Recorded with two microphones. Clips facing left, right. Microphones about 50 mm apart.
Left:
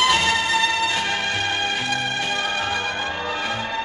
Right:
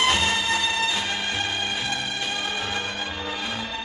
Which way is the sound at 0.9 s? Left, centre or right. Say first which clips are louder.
Left 4 dB; left.